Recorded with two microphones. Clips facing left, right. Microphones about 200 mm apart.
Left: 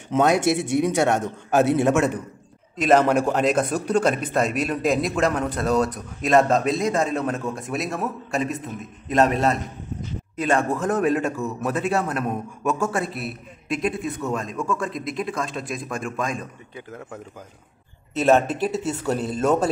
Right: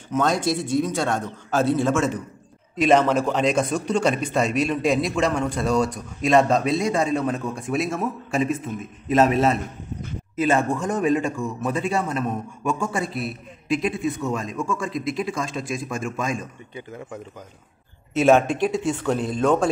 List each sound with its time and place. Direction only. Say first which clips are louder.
0.6 s speech: even; 75° left (ahead or behind)
0.8 s a man's voice: left 4 dB; 20° left (ahead or behind)
2.7 s a man's voice: even; centre (ahead or behind)